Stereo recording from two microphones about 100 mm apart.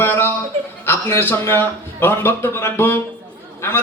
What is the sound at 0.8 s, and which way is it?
A man's voice, 25° left (ahead or behind).